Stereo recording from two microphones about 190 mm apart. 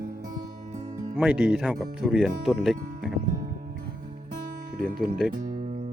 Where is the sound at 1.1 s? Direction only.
5° right (ahead or behind).